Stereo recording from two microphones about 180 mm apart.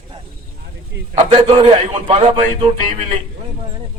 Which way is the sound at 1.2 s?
30° right (ahead or behind).